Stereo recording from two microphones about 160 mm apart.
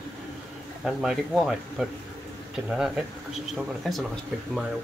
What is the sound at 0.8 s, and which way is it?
Speech, centre (ahead or behind).